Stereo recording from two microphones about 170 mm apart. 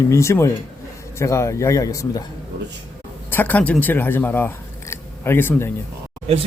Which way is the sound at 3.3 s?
10° left (ahead or behind).